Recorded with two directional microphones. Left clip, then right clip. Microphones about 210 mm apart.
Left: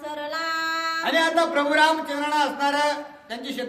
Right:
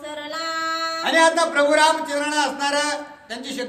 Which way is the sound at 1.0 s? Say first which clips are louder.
Right 5 dB; 10° right (ahead or behind).